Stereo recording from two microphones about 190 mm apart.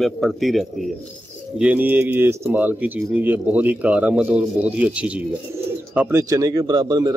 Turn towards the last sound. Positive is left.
turn(degrees=-20)  # may be behind; listen again after turning